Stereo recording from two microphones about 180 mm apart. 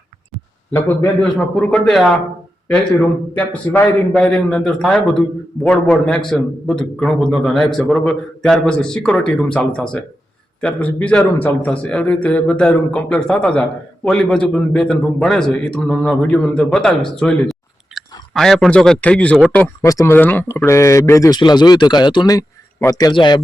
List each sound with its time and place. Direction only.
0.7 s a man's voice: 10° left (ahead or behind)
3.3 s a man's voice: 10° left (ahead or behind); by 23.4 s 25° left (ahead or behind)